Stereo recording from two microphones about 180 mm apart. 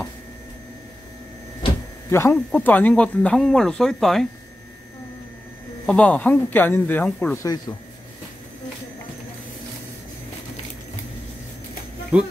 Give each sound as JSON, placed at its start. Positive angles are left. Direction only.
{"t": 2.0, "sound": "speech", "side_deg": 15}
{"t": 5.9, "sound": "speech", "side_deg": 5}
{"t": 7.4, "sound": "speech", "side_deg": 20}
{"t": 12.1, "sound": "speech", "side_deg": -5}